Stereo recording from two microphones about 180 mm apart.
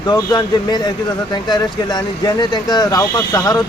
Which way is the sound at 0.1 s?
20° left (ahead or behind).